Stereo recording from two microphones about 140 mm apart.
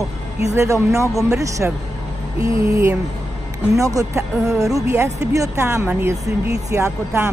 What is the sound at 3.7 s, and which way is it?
Speech, 25° right (ahead or behind).